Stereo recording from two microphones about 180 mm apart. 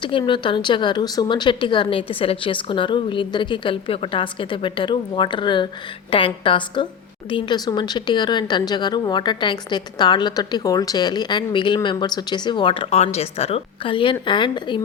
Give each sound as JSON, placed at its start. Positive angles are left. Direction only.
{"t": 0.0, "sound": "speech", "side_deg": 25}